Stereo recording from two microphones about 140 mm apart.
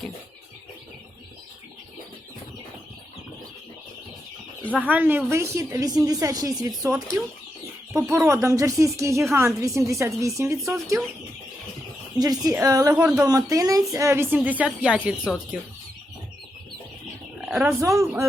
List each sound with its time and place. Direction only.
4.8 s a woman's voice: 10° right (ahead or behind); by 6.9 s 25° right (ahead or behind)
7.9 s a woman's voice: 15° right (ahead or behind)
12.2 s a woman's voice: 25° right (ahead or behind); by 15.3 s 5° right (ahead or behind)
17.5 s speech: 5° right (ahead or behind)
17.7 s a woman's voice: 20° right (ahead or behind)